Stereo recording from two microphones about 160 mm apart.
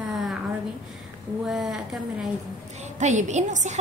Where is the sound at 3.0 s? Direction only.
45° right (ahead or behind).